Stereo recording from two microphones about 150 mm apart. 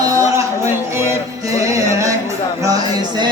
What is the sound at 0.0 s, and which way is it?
Music, 20° right (ahead or behind).